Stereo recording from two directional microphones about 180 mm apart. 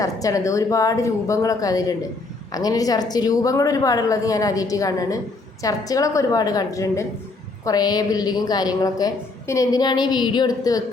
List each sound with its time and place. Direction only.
0.0 s a woman's voice: 20° left (ahead or behind)